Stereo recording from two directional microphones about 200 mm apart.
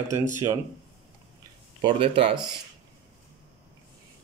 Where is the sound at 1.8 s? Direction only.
25° right (ahead or behind).